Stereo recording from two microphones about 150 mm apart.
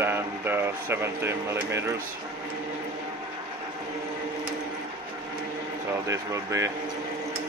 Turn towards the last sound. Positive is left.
turn(degrees=-20)  # may be behind; listen again after turning